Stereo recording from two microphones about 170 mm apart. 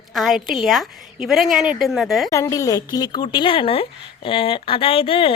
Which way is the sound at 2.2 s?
20° left (ahead or behind).